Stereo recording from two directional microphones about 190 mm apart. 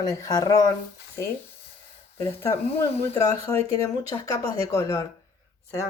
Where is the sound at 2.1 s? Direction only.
15° left (ahead or behind).